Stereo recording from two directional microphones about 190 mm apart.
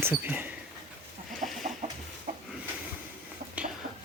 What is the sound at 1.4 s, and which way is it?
Chicken, 40° right (ahead or behind).